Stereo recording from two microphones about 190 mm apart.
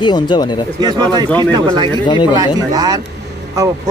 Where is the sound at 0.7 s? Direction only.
20° right (ahead or behind).